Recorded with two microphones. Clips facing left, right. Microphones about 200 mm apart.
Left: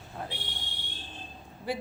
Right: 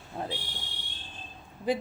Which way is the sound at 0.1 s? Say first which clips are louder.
Right 4 dB; 30° right (ahead or behind).